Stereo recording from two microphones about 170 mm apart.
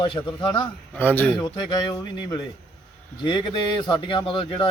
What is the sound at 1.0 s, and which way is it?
Speech, 10° left (ahead or behind).